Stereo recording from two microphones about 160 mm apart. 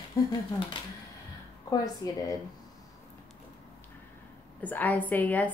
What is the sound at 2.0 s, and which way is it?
Speech, 20° left (ahead or behind).